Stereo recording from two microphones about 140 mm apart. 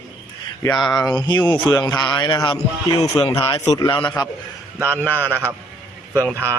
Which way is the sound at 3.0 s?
45° left (ahead or behind).